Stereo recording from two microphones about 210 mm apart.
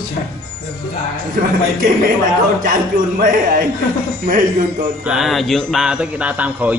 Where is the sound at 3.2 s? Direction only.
40° right (ahead or behind).